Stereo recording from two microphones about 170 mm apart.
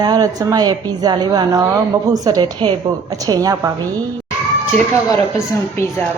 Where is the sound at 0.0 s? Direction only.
20° right (ahead or behind).